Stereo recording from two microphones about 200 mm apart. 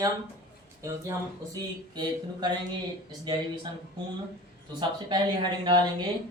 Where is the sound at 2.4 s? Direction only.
20° right (ahead or behind).